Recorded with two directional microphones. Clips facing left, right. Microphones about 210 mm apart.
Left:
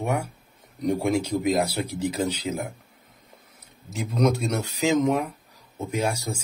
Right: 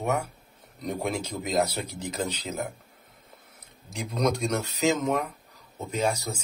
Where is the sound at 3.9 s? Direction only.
5° left (ahead or behind).